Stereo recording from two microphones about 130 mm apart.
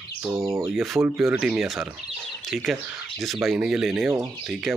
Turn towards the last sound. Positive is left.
turn(degrees=5)  # may be behind; listen again after turning